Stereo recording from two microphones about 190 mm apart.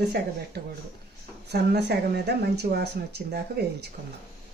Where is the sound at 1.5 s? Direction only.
60° right (ahead or behind).